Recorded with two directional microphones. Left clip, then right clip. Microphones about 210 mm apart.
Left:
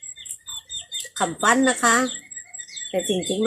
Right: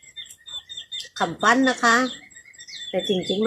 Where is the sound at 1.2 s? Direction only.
Centre (ahead or behind).